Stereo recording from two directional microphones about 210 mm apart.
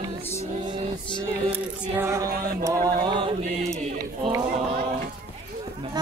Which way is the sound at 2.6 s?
15° right (ahead or behind).